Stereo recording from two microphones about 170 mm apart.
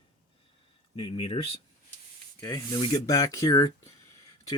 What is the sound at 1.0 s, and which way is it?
Speech, 30° left (ahead or behind).